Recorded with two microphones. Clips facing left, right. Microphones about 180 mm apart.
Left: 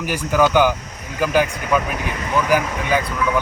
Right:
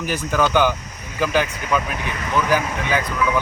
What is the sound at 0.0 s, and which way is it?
Speech, 10° left (ahead or behind).